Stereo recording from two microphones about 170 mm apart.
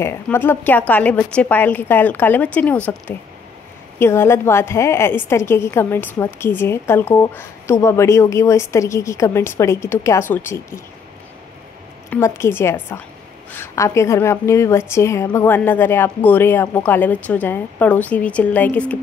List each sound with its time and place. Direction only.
0.0 s a woman's voice: 15° left (ahead or behind)
4.0 s a woman's voice: 15° left (ahead or behind)
12.1 s a woman's voice: 15° left (ahead or behind)